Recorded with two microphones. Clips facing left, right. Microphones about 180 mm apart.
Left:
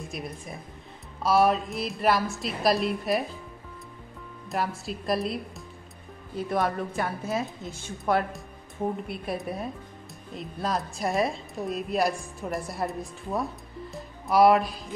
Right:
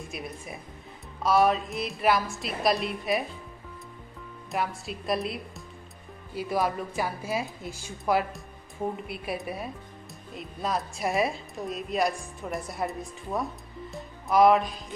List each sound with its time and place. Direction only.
0.1 s a woman's voice: 5° right (ahead or behind)
4.5 s a woman's voice: centre (ahead or behind)